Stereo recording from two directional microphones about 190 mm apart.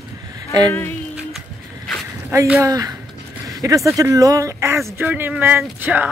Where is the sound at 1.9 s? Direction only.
Centre (ahead or behind).